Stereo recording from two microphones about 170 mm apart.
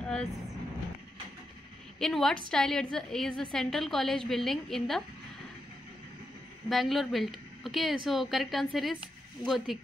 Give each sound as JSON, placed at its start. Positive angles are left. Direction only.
{"t": 0.0, "sound": "a sound", "side_deg": 5}
{"t": 2.0, "sound": "a woman's voice", "side_deg": 0}
{"t": 6.7, "sound": "speech", "side_deg": 0}